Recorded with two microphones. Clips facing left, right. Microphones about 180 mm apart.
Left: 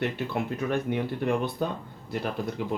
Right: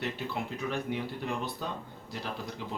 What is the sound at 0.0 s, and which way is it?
Speech, 55° left (ahead or behind).